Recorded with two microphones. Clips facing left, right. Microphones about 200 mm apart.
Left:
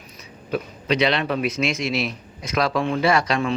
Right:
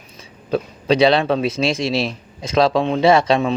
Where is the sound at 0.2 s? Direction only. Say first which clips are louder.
Right 5 dB; 30° right (ahead or behind).